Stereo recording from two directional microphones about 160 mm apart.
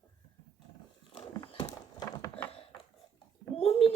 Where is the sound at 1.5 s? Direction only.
35° left (ahead or behind).